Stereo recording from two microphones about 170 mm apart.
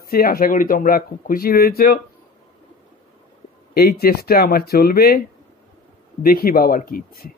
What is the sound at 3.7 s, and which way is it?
Speech, 65° left (ahead or behind).